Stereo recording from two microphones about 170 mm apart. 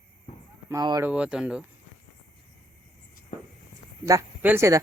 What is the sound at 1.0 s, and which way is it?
Speech, 5° right (ahead or behind).